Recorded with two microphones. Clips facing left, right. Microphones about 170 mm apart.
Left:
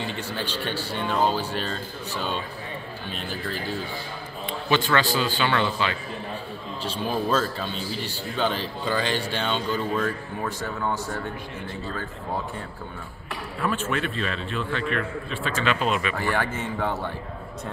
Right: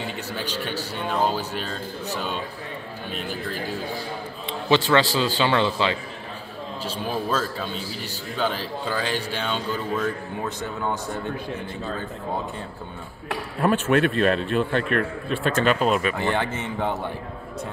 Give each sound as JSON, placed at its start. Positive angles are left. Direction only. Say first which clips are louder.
{"t": 0.0, "sound": "speech", "louder": "even", "side_deg": -10}
{"t": 4.6, "sound": "a man's voice", "louder": "right 3 dB", "side_deg": -25}
{"t": 6.8, "sound": "a man's voice", "louder": "left 1 dB", "side_deg": -5}
{"t": 10.0, "sound": "speech", "louder": "right 1 dB", "side_deg": -20}
{"t": 13.3, "sound": "speech", "louder": "right 6 dB", "side_deg": -60}
{"t": 16.2, "sound": "a man's voice", "louder": "right 2 dB", "side_deg": -20}